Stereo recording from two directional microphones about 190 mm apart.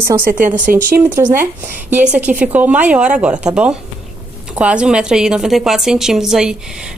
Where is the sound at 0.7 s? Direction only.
50° right (ahead or behind).